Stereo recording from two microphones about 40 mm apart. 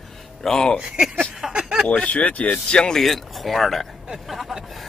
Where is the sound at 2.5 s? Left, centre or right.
Left.